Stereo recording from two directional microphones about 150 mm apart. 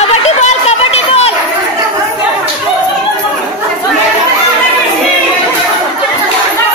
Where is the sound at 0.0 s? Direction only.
45° left (ahead or behind).